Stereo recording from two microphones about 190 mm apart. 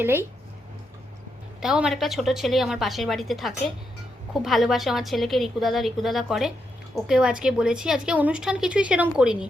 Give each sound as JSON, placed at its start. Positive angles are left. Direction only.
{"t": 0.0, "sound": "speech", "side_deg": -10}
{"t": 1.6, "sound": "a woman's voice", "side_deg": -5}